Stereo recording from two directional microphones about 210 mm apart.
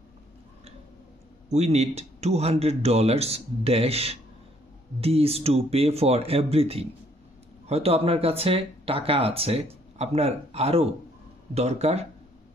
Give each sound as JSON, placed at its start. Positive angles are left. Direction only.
{"t": 1.5, "sound": "speech", "side_deg": -30}